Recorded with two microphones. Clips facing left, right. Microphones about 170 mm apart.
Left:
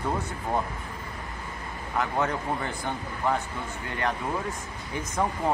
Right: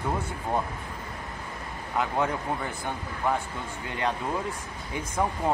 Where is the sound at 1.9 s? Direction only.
15° right (ahead or behind).